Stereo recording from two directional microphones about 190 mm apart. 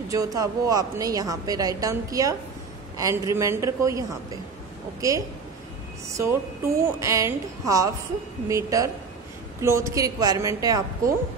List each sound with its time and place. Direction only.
0.1 s a woman's voice: 20° right (ahead or behind)